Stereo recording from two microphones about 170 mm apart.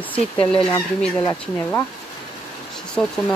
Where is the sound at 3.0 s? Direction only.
Centre (ahead or behind).